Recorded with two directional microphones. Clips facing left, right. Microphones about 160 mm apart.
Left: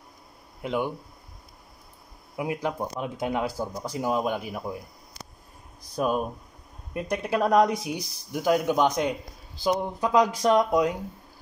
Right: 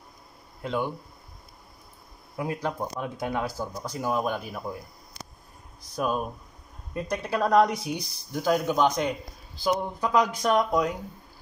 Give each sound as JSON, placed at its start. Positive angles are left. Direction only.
{"t": 0.6, "sound": "speech", "side_deg": 15}
{"t": 2.3, "sound": "speech", "side_deg": 15}
{"t": 6.9, "sound": "speech", "side_deg": 15}